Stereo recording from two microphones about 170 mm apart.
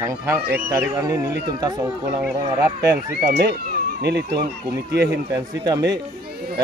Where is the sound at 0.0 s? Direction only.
15° right (ahead or behind).